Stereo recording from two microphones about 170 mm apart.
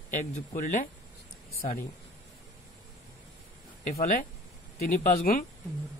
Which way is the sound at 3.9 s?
55° left (ahead or behind).